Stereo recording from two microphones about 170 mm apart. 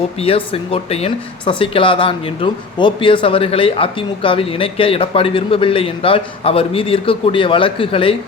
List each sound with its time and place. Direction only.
0.2 s speech: 35° left (ahead or behind)